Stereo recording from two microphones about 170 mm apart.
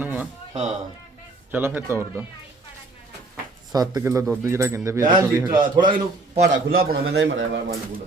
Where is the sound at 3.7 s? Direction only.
20° right (ahead or behind).